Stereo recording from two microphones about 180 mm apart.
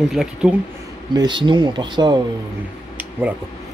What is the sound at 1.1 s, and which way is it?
Speech, 25° right (ahead or behind).